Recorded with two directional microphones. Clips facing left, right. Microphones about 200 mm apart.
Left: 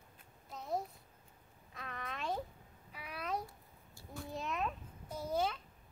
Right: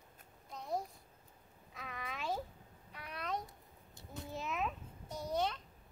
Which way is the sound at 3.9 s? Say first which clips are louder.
Left 1 dB; 20° right (ahead or behind).